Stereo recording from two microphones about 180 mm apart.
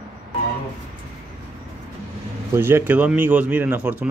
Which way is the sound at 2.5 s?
15° right (ahead or behind).